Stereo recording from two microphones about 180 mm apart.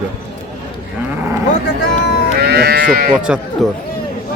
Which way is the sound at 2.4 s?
60° right (ahead or behind).